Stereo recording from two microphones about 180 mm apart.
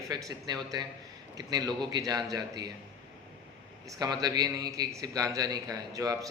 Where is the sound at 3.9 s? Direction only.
20° right (ahead or behind).